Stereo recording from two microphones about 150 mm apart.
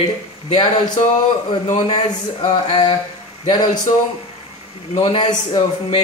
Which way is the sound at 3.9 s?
50° left (ahead or behind).